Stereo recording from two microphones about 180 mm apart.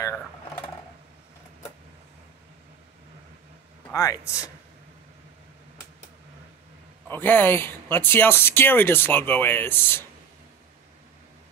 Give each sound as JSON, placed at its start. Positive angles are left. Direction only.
{"t": 3.9, "sound": "speech", "side_deg": 15}
{"t": 7.1, "sound": "speech", "side_deg": 10}